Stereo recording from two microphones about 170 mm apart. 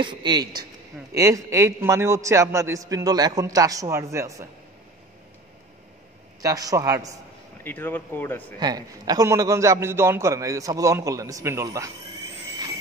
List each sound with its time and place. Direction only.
0.0 s a man's voice: 25° right (ahead or behind)
6.4 s a man's voice: 20° right (ahead or behind)
7.6 s speech: 10° left (ahead or behind)
8.5 s a man's voice: 25° right (ahead or behind)